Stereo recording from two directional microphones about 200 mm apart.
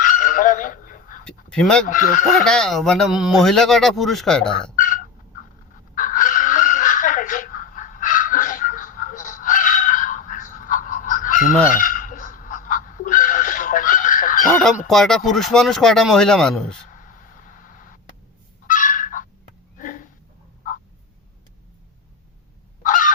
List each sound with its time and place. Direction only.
0.0 s goose: 40° left (ahead or behind)
1.2 s a sound: 5° left (ahead or behind)
1.9 s speech: 40° left (ahead or behind)
2.4 s speech: 5° left (ahead or behind)
4.8 s fowl: 45° left (ahead or behind)
5.9 s chicken: 40° left (ahead or behind)
11.7 s a sound: 40° left (ahead or behind)
14.8 s speech: centre (ahead or behind)
16.9 s vehicle: 40° left (ahead or behind)
18.7 s goose: 40° left (ahead or behind)
19.8 s a sound: 40° left (ahead or behind)
22.8 s fowl: 40° left (ahead or behind)